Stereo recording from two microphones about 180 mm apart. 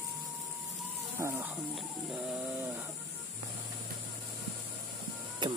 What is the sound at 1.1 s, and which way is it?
Speech, 15° right (ahead or behind).